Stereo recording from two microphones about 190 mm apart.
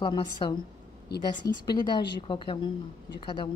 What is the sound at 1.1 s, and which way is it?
Speech, 60° left (ahead or behind).